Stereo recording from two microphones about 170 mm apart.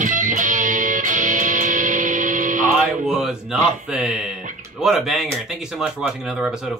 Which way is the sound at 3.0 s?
5° right (ahead or behind).